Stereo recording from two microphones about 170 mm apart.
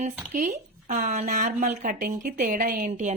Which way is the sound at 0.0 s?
50° right (ahead or behind).